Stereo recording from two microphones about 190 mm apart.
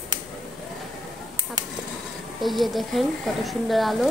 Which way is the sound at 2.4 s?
Centre (ahead or behind).